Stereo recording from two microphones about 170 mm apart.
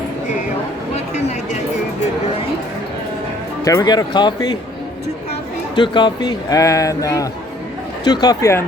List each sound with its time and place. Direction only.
0.9 s a sound: 40° left (ahead or behind)
3.6 s speech: 20° left (ahead or behind)
5.7 s speech: 30° left (ahead or behind)